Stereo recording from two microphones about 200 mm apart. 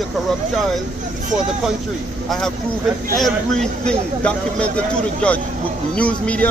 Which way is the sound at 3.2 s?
5° left (ahead or behind).